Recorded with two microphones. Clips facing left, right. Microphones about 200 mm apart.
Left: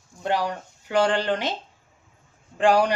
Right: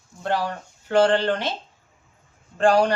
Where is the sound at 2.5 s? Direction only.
15° left (ahead or behind).